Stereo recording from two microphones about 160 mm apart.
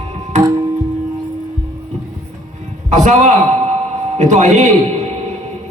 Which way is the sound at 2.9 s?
50° right (ahead or behind).